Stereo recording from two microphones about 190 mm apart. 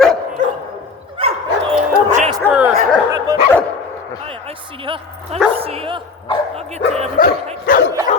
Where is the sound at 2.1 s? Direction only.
35° right (ahead or behind).